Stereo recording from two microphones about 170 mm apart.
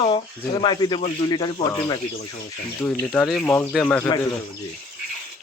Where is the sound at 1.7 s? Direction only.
15° left (ahead or behind).